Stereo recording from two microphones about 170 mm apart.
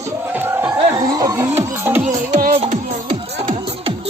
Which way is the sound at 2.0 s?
45° right (ahead or behind).